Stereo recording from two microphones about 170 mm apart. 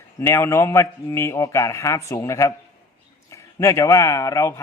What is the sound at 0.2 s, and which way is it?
A man's voice, 15° left (ahead or behind).